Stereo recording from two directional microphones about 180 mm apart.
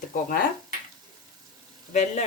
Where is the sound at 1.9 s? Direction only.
40° left (ahead or behind).